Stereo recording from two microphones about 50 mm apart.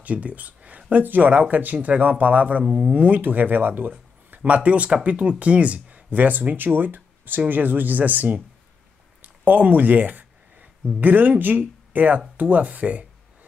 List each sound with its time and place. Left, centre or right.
0.0 s speech: right
2.6 s speech: centre
2.9 s speech: right
4.5 s speech: right
12.4 s a sound: right